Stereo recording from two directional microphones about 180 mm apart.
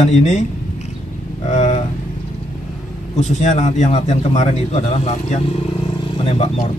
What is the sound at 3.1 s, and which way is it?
Speech, 40° left (ahead or behind).